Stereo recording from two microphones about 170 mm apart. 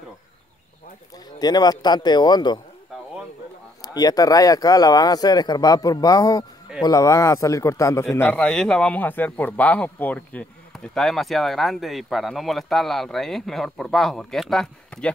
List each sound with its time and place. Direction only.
1.4 s speech: 25° left (ahead or behind)
3.8 s speech: 20° left (ahead or behind)
8.3 s speech: 5° left (ahead or behind)